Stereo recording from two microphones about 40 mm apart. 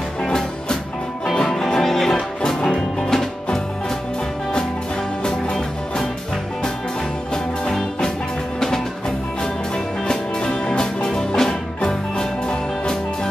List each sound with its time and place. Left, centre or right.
0.2 s music: centre
5.2 s music: centre
7.6 s music: centre
10.0 s music: centre